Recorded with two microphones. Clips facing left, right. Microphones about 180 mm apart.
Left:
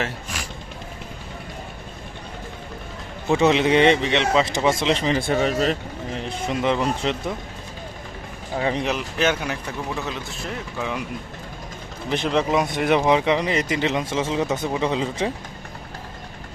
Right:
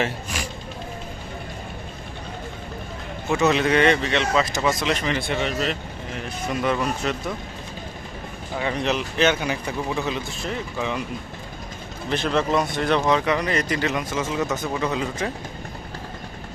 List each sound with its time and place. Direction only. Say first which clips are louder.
3.2 s speech: left 2 dB; 30° left (ahead or behind)
6.1 s speech: left 1 dB; 25° left (ahead or behind)
8.8 s a man's voice: right 2 dB; 5° left (ahead or behind)
12.0 s speech: left 1 dB; 15° left (ahead or behind)